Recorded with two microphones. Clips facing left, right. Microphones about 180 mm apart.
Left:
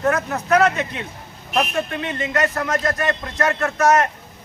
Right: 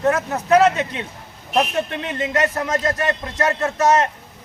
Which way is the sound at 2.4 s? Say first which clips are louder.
Left 1 dB; 25° right (ahead or behind).